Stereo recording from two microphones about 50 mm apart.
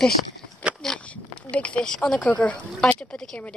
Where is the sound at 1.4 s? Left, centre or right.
Left.